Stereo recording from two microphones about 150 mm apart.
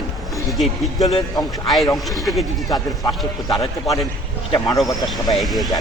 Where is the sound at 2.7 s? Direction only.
25° left (ahead or behind).